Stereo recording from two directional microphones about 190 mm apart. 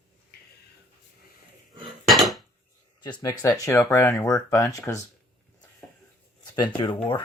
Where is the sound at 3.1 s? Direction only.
20° left (ahead or behind).